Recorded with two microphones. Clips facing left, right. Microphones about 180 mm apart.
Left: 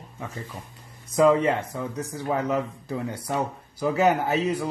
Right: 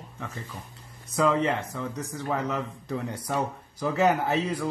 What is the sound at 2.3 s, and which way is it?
Speech, 10° left (ahead or behind).